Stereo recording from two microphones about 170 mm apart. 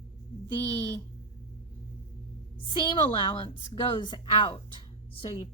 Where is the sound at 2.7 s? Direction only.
30° left (ahead or behind).